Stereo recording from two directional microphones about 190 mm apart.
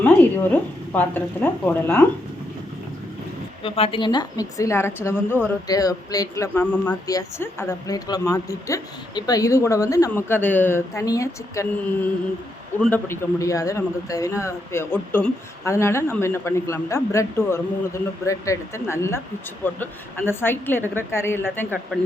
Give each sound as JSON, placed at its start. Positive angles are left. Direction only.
{"t": 0.0, "sound": "a woman's voice", "side_deg": 10}
{"t": 3.6, "sound": "a man's voice", "side_deg": 30}
{"t": 12.8, "sound": "a man's voice", "side_deg": 10}